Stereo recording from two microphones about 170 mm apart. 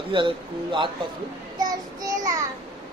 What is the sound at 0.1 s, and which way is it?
Speech, 30° right (ahead or behind).